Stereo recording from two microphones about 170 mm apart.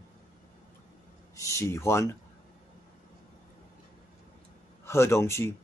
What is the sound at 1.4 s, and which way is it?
Speech, 15° left (ahead or behind).